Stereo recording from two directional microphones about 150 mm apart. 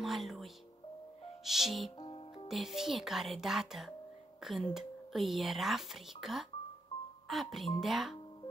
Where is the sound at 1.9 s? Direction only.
35° left (ahead or behind).